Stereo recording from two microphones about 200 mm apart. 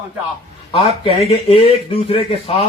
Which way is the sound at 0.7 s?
30° left (ahead or behind).